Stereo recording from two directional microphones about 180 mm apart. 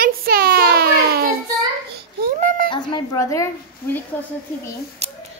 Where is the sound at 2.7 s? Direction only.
25° left (ahead or behind).